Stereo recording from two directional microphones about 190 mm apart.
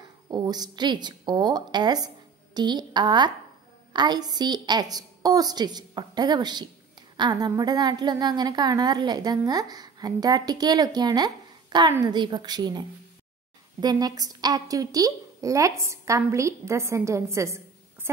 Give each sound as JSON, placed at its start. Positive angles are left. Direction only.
{"t": 0.3, "sound": "a woman's voice", "side_deg": -20}